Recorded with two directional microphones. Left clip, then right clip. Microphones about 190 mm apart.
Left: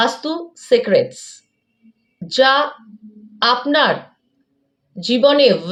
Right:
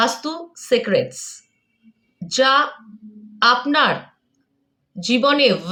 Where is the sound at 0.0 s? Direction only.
15° right (ahead or behind).